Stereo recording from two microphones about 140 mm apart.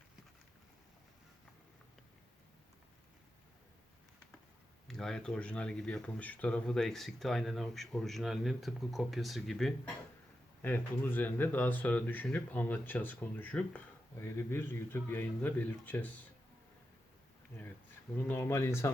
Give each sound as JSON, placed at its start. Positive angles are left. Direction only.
{"t": 4.9, "sound": "speech", "side_deg": 5}
{"t": 10.6, "sound": "speech", "side_deg": 15}
{"t": 18.2, "sound": "speech", "side_deg": 15}